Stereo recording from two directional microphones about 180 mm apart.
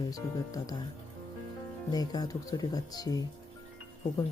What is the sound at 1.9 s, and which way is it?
Speech, 20° left (ahead or behind).